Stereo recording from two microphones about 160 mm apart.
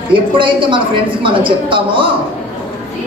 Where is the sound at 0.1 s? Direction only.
30° right (ahead or behind).